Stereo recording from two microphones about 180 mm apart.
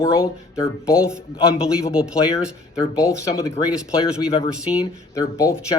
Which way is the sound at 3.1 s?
20° left (ahead or behind).